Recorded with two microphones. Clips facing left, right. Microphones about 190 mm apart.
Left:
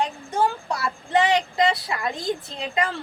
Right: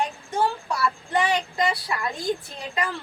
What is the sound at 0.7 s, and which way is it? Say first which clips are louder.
A child's voice: left 1 dB; 20° left (ahead or behind).